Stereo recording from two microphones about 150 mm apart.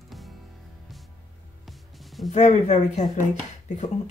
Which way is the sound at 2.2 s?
50° left (ahead or behind).